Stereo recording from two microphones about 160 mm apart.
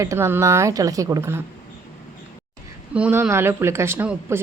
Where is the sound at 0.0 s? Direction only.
20° right (ahead or behind).